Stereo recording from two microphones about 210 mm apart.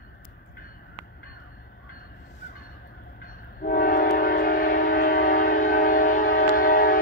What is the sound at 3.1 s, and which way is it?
Train, 45° left (ahead or behind).